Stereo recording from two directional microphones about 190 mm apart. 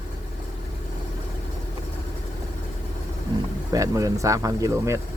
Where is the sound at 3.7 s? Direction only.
15° right (ahead or behind).